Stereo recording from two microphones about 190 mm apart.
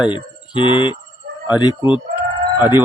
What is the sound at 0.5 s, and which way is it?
Speech, 25° left (ahead or behind).